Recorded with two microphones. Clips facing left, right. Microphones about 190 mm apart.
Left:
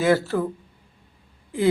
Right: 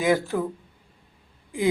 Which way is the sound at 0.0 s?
15° right (ahead or behind).